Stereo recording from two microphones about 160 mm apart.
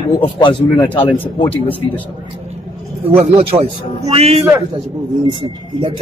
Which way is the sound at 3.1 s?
35° right (ahead or behind).